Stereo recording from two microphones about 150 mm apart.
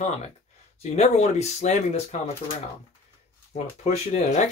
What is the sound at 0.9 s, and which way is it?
Speech, 50° left (ahead or behind).